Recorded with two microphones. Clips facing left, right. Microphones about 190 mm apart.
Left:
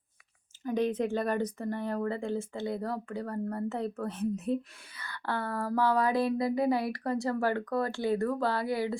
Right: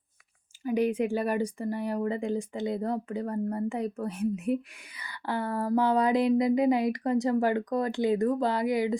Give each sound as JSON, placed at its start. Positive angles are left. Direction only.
{"t": 0.6, "sound": "speech", "side_deg": -10}